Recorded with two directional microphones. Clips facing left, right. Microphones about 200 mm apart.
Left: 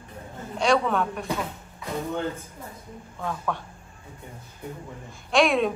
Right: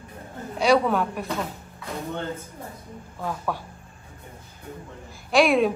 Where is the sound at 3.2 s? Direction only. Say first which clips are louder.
Right 1 dB; 5° right (ahead or behind).